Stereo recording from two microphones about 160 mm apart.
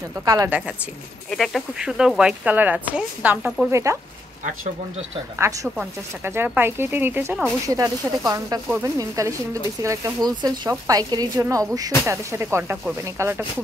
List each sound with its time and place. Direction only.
0.2 s speech: 20° right (ahead or behind)
0.5 s speech: 5° right (ahead or behind)
5.4 s speech: 20° right (ahead or behind)